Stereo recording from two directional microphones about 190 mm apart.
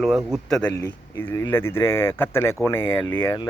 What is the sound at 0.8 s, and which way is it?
Speech, 10° left (ahead or behind).